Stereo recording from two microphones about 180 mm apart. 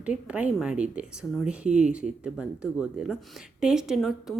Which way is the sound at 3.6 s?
5° right (ahead or behind).